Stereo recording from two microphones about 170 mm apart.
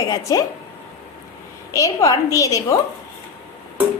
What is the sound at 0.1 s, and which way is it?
Speech, 20° left (ahead or behind).